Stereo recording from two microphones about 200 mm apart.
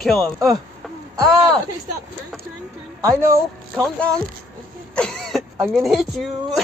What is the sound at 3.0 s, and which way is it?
Speech, 15° right (ahead or behind).